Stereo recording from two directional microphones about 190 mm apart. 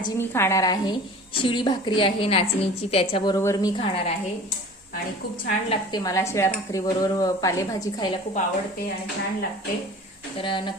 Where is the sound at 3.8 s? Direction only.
30° left (ahead or behind).